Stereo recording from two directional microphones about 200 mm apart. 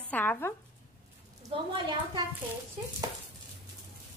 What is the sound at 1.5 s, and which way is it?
Speech, 25° right (ahead or behind).